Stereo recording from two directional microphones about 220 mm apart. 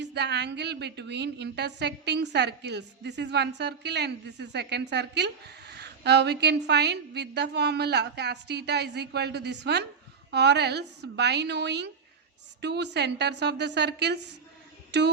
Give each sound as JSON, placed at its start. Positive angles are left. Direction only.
{"t": 0.0, "sound": "a woman's voice", "side_deg": -50}